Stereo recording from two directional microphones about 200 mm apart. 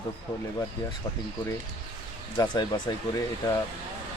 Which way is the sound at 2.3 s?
20° left (ahead or behind).